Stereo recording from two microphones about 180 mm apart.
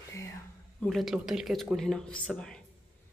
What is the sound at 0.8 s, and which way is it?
Speech, centre (ahead or behind).